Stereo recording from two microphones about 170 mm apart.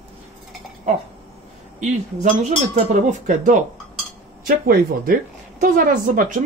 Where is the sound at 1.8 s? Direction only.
45° right (ahead or behind).